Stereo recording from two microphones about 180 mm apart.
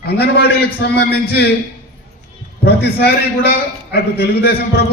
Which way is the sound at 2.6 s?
65° left (ahead or behind).